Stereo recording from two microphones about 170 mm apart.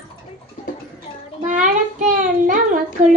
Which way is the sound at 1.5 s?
50° right (ahead or behind).